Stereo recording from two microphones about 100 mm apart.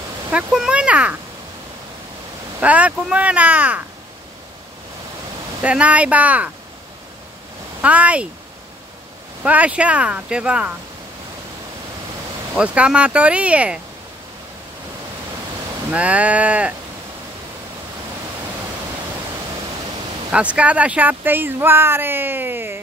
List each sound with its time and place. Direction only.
0.3 s speech: 10° right (ahead or behind)
2.6 s speech: 15° right (ahead or behind)
5.6 s speech: 10° right (ahead or behind)
7.8 s speech: 15° right (ahead or behind)
9.4 s speech: 15° right (ahead or behind)
12.5 s speech: 10° right (ahead or behind)
15.9 s speech: 15° right (ahead or behind)
20.2 s speech: 10° right (ahead or behind)